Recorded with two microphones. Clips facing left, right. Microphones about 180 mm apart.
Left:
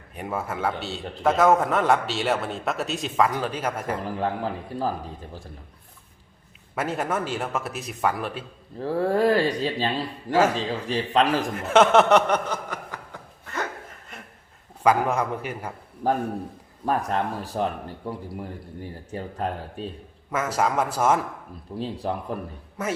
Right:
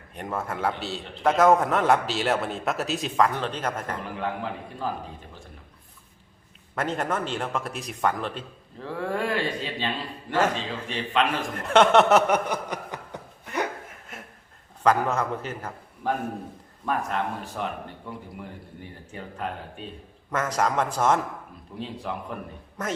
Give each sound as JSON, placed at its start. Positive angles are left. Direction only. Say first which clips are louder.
{"t": 0.1, "sound": "a man's voice", "louder": "left 1 dB", "side_deg": 5}
{"t": 4.2, "sound": "a man's voice", "louder": "left 3 dB", "side_deg": 35}
{"t": 6.7, "sound": "a man's voice", "louder": "left 1 dB", "side_deg": 5}
{"t": 8.8, "sound": "a man's voice", "louder": "left 7 dB", "side_deg": 35}
{"t": 11.5, "sound": "a man's voice", "louder": "even", "side_deg": 0}
{"t": 12.5, "sound": "chuckle", "louder": "right 1 dB", "side_deg": -20}
{"t": 14.8, "sound": "a man's voice", "louder": "left 1 dB", "side_deg": 15}
{"t": 16.0, "sound": "a man's voice", "louder": "left 4 dB", "side_deg": 40}
{"t": 20.3, "sound": "a man's voice", "louder": "left 1 dB", "side_deg": 5}
{"t": 21.8, "sound": "a man's voice", "louder": "left 4 dB", "side_deg": 35}